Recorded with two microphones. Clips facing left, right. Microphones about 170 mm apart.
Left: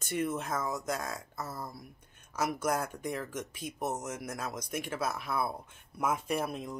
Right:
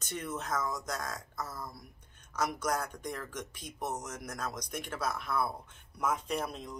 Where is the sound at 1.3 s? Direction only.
30° left (ahead or behind).